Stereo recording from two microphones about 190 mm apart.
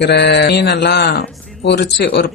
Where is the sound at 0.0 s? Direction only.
65° left (ahead or behind).